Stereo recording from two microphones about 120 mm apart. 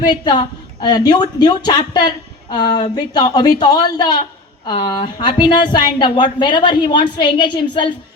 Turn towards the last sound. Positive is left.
turn(degrees=40)  # may be behind; listen again after turning